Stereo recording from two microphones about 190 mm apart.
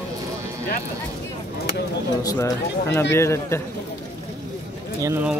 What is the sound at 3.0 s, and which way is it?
Speech, 15° left (ahead or behind).